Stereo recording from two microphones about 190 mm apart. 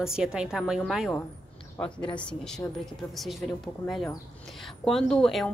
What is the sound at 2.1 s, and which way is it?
A woman's voice, 5° left (ahead or behind).